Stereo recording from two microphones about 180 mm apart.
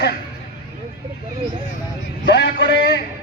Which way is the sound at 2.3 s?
75° left (ahead or behind).